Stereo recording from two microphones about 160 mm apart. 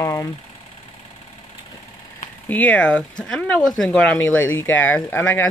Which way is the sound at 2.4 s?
10° left (ahead or behind).